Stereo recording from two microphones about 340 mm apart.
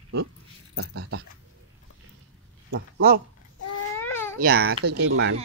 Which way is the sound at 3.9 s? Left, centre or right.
Centre.